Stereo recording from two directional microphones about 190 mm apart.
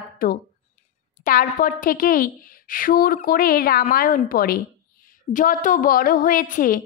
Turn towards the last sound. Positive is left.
turn(degrees=45)  # may be behind; listen again after turning